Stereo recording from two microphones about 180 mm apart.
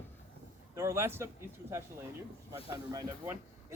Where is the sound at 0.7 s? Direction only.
15° right (ahead or behind).